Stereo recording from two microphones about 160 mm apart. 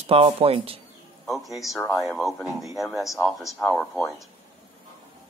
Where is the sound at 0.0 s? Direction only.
35° right (ahead or behind).